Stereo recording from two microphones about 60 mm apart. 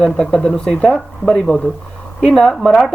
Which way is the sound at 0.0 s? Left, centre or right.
Centre.